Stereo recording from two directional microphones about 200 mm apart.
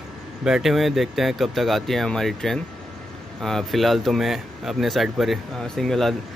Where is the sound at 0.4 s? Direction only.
Centre (ahead or behind).